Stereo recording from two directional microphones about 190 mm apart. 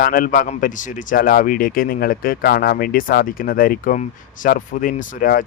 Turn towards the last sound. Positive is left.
turn(degrees=45)  # may be behind; listen again after turning